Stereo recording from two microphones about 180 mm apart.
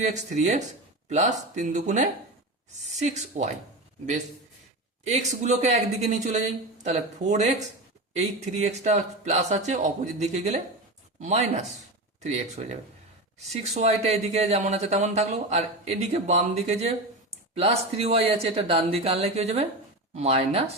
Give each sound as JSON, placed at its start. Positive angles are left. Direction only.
{"t": 0.0, "sound": "speech", "side_deg": -40}
{"t": 5.0, "sound": "speech", "side_deg": -40}